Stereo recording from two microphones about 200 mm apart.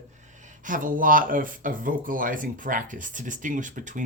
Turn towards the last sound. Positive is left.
turn(degrees=-40)  # may be behind; listen again after turning